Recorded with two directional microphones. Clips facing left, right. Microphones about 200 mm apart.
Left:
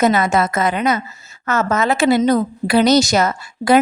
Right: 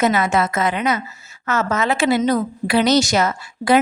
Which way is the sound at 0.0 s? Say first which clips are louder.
Left 2 dB; 40° left (ahead or behind).